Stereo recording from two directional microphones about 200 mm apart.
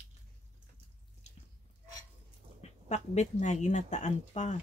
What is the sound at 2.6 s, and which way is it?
Speech, 35° left (ahead or behind).